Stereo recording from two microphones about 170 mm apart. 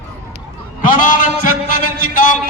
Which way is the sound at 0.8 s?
50° left (ahead or behind).